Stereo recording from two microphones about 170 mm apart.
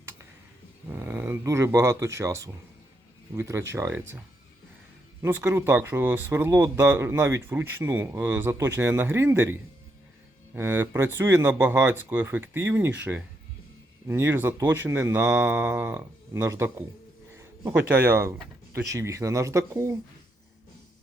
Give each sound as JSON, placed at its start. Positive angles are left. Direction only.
{"t": 0.9, "sound": "speech", "side_deg": -15}
{"t": 5.2, "sound": "speech", "side_deg": -15}
{"t": 14.1, "sound": "speech", "side_deg": -15}